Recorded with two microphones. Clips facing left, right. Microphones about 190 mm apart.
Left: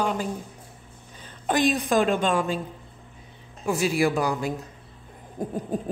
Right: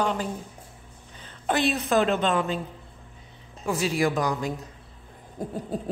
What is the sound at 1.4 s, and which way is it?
A woman's voice, 15° left (ahead or behind).